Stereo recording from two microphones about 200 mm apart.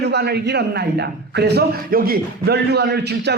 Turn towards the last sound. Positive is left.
turn(degrees=-55)  # may be behind; listen again after turning